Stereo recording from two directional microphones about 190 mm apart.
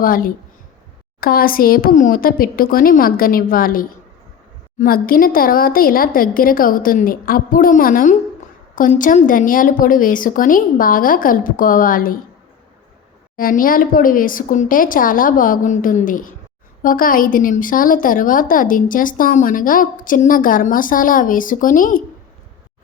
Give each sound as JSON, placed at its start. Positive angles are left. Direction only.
{"t": 0.0, "sound": "a woman's voice", "side_deg": 50}
{"t": 13.3, "sound": "a woman's voice", "side_deg": 45}